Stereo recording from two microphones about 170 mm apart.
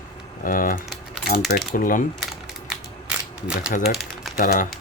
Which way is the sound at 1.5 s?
55° left (ahead or behind).